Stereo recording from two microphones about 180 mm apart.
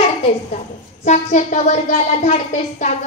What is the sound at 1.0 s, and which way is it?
A child's voice, 40° left (ahead or behind).